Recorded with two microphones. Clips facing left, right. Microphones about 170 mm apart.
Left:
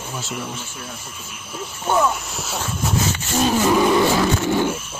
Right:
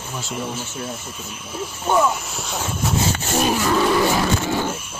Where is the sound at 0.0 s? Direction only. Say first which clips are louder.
Even; centre (ahead or behind).